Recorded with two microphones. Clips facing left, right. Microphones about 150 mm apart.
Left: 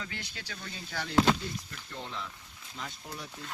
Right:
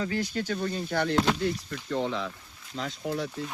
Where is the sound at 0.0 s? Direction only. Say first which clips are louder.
Right 13 dB; 40° right (ahead or behind).